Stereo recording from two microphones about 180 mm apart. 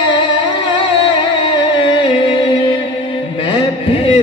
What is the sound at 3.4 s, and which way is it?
Music, 30° left (ahead or behind).